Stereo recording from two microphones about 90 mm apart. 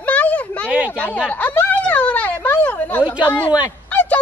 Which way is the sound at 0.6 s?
15° right (ahead or behind).